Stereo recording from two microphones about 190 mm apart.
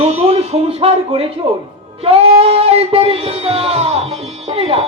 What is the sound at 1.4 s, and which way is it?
Child singing, 30° right (ahead or behind).